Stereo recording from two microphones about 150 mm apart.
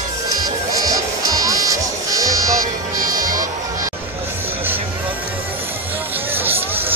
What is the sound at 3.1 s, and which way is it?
Music, 65° right (ahead or behind).